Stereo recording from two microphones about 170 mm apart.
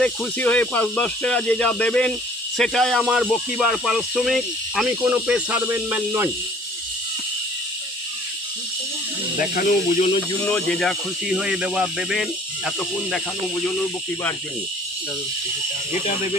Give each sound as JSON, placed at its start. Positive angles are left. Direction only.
{"t": 0.0, "sound": "speech", "side_deg": 5}
{"t": 9.4, "sound": "speech", "side_deg": 55}
{"t": 10.4, "sound": "speech", "side_deg": 5}
{"t": 15.9, "sound": "speech", "side_deg": 45}